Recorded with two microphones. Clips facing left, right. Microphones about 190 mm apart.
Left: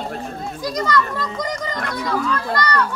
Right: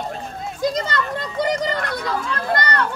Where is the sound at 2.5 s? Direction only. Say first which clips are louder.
Right 1 dB; 55° right (ahead or behind).